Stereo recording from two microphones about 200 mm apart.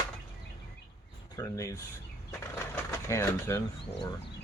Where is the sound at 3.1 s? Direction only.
15° left (ahead or behind).